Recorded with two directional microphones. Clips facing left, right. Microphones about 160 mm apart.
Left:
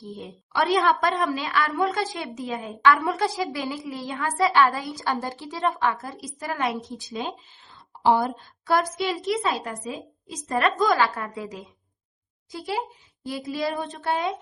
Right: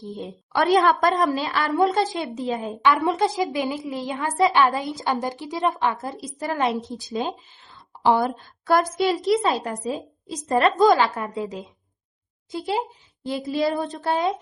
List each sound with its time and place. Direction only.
0.5 s a woman's voice: 45° right (ahead or behind)
8.0 s speech: 70° right (ahead or behind)
8.6 s a woman's voice: 45° right (ahead or behind)